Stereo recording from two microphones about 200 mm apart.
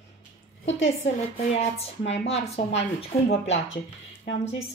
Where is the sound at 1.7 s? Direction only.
30° left (ahead or behind).